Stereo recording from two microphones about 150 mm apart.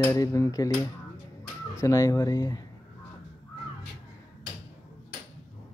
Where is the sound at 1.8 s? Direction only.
20° left (ahead or behind).